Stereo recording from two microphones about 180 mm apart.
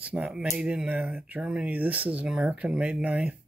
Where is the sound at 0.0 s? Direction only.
5° right (ahead or behind).